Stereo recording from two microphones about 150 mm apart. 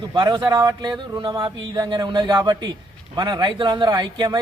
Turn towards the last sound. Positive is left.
turn(degrees=-25)  # may be behind; listen again after turning